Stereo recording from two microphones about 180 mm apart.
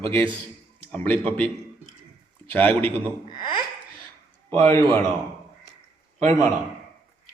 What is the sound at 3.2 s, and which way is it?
Speech, 25° left (ahead or behind).